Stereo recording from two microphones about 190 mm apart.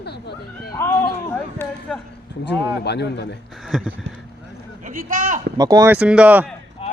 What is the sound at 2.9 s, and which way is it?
Speech, 60° left (ahead or behind).